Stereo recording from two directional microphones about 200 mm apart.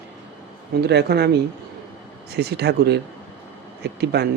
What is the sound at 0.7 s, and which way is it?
Speech, 55° right (ahead or behind).